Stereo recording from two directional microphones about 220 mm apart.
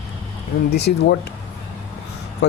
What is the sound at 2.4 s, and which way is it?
Speech, 50° left (ahead or behind).